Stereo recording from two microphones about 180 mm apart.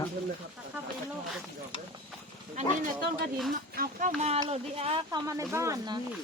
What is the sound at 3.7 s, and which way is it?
Speech, 55° right (ahead or behind).